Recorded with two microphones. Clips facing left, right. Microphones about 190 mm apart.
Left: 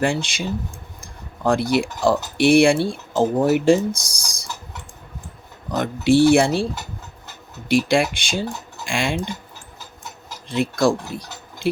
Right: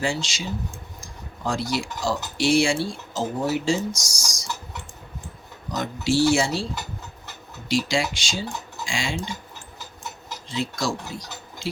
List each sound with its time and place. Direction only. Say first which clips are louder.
0.0 s speech: left 5 dB; 55° left (ahead or behind)
5.7 s speech: left 6 dB; 55° left (ahead or behind)
7.7 s speech: left 6 dB; 55° left (ahead or behind)
10.5 s speech: left 8 dB; 55° left (ahead or behind)